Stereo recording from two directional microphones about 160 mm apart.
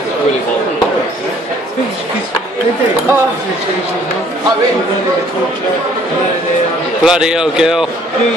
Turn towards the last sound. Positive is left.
turn(degrees=-5)  # may be behind; listen again after turning